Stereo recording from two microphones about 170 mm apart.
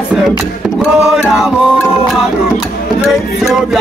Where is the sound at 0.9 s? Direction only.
5° right (ahead or behind).